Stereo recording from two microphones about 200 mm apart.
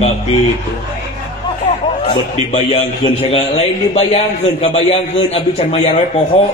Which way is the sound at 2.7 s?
30° left (ahead or behind).